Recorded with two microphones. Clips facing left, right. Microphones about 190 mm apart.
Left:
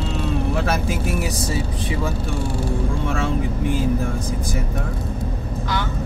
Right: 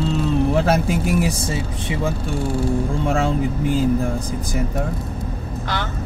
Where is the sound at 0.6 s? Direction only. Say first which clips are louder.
Right 4 dB; 30° right (ahead or behind).